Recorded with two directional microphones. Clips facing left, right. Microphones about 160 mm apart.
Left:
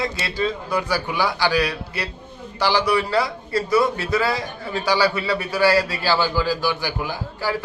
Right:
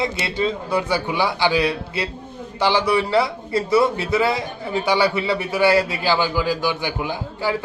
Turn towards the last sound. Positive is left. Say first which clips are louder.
# right 2 dB
turn(degrees=-20)  # may be behind; listen again after turning